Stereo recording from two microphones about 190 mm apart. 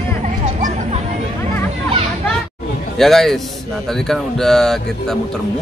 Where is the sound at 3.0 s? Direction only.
Centre (ahead or behind).